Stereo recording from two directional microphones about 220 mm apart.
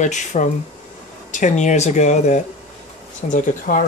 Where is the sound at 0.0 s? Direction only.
35° left (ahead or behind).